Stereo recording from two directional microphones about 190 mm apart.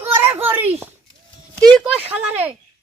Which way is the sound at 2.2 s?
10° right (ahead or behind).